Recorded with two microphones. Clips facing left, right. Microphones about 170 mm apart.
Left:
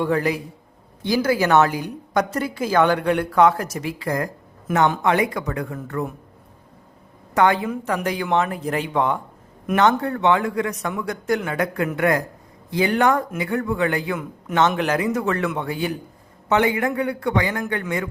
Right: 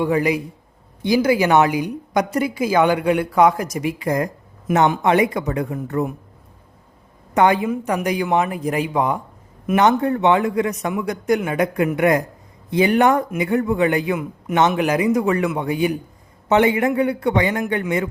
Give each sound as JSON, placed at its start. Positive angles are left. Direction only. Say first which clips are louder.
{"t": 0.0, "sound": "a woman's voice", "louder": "right 2 dB", "side_deg": -15}
{"t": 7.3, "sound": "a woman's voice", "louder": "right 2 dB", "side_deg": -15}